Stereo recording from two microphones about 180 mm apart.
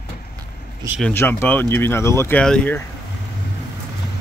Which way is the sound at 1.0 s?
10° left (ahead or behind).